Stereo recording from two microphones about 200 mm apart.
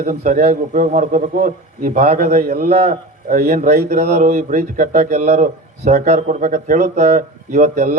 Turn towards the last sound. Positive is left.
turn(degrees=-40)  # may be behind; listen again after turning